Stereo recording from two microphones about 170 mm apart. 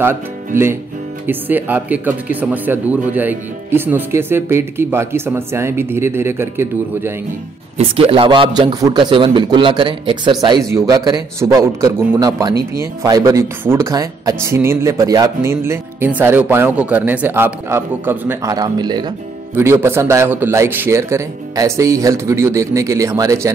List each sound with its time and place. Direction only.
1.2 s speech: 10° right (ahead or behind)
7.7 s a man's voice: 35° right (ahead or behind)
19.5 s speech: 15° right (ahead or behind)